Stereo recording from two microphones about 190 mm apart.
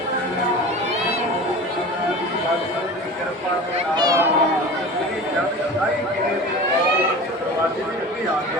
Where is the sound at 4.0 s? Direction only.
20° right (ahead or behind).